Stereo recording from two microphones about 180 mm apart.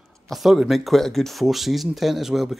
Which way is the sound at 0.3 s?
Centre (ahead or behind).